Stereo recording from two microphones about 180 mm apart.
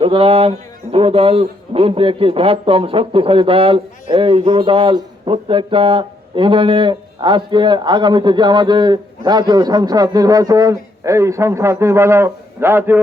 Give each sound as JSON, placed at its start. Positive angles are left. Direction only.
{"t": 0.0, "sound": "speech", "side_deg": -30}